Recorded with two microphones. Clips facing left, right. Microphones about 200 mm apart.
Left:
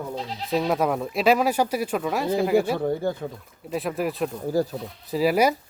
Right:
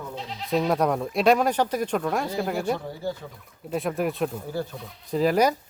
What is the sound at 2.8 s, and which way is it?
Speech, 55° left (ahead or behind).